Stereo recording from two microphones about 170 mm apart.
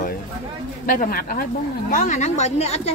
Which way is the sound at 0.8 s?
55° left (ahead or behind).